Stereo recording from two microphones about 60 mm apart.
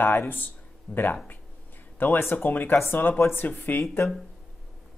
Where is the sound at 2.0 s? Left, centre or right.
Left.